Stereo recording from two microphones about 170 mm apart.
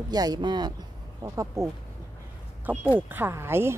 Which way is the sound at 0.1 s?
25° right (ahead or behind).